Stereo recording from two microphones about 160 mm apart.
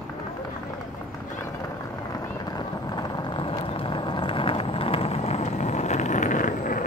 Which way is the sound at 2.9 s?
25° left (ahead or behind).